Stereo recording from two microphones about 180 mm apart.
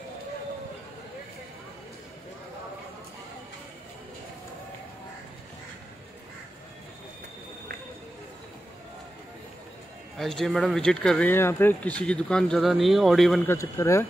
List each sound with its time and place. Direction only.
10.1 s speech: centre (ahead or behind)
13.5 s speech: 15° left (ahead or behind)